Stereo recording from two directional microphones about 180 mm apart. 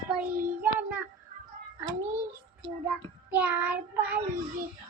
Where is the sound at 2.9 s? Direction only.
10° right (ahead or behind).